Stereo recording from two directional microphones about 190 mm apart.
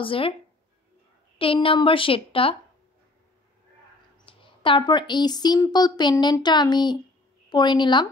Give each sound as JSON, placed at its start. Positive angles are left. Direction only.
{"t": 0.0, "sound": "a woman's voice", "side_deg": 30}
{"t": 1.4, "sound": "a woman's voice", "side_deg": 30}
{"t": 4.3, "sound": "a woman's voice", "side_deg": 25}